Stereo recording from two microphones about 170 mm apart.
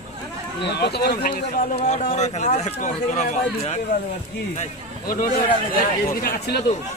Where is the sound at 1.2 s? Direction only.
60° left (ahead or behind).